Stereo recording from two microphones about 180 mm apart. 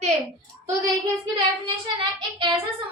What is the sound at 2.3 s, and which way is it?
Speech, 30° right (ahead or behind).